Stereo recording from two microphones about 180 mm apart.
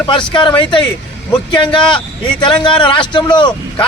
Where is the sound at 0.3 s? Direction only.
25° left (ahead or behind).